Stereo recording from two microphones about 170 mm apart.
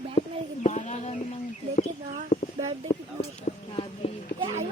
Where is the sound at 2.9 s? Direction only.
40° left (ahead or behind).